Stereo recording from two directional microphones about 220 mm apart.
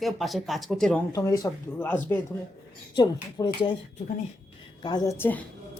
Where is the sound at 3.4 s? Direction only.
15° left (ahead or behind).